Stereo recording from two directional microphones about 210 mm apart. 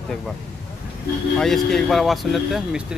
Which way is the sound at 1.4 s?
Centre (ahead or behind).